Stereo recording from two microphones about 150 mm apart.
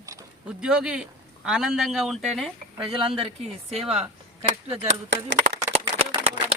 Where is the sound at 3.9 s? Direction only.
35° right (ahead or behind).